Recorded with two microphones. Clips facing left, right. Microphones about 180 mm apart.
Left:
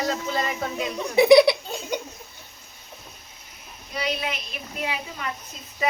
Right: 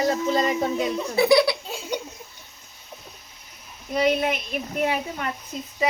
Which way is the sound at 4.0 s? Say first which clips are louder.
Right 7 dB; 50° right (ahead or behind).